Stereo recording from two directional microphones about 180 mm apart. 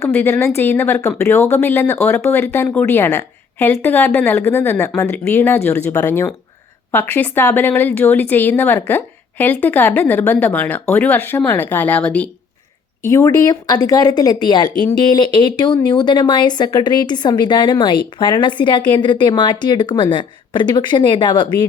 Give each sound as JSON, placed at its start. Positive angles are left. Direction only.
{"t": 0.0, "sound": "speech", "side_deg": 10}
{"t": 13.1, "sound": "speech", "side_deg": 20}